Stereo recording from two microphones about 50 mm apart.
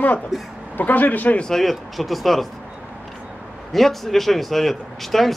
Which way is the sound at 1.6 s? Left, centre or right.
Centre.